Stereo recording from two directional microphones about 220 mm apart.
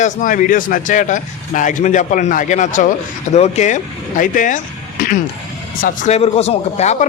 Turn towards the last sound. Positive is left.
turn(degrees=30)  # may be behind; listen again after turning